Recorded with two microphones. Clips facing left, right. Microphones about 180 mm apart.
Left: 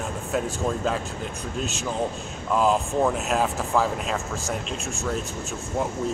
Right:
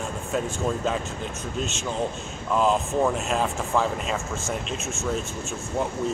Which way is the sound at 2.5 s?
5° left (ahead or behind).